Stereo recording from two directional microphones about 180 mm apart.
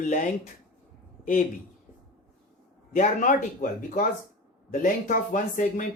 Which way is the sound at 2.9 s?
45° left (ahead or behind).